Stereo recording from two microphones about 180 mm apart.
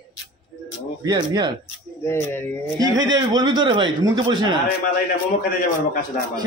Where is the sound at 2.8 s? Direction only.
20° right (ahead or behind).